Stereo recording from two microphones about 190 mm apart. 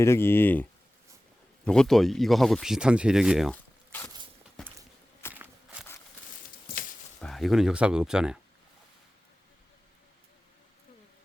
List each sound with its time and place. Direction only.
0.0 s speech: 15° left (ahead or behind)
5.3 s walk: 10° right (ahead or behind)
7.2 s speech: centre (ahead or behind)